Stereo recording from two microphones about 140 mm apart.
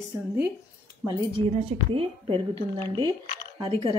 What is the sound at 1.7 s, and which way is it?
A woman's voice, 35° right (ahead or behind).